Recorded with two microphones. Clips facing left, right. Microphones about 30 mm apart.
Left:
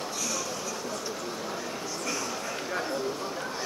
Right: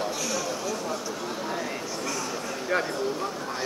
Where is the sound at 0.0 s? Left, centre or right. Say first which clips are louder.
Right 4 dB; centre.